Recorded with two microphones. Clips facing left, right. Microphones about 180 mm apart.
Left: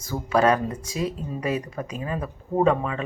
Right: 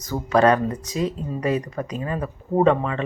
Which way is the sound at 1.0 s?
35° right (ahead or behind).